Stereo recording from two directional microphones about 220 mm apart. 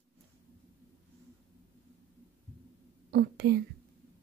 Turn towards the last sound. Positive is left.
turn(degrees=-45)  # may be behind; listen again after turning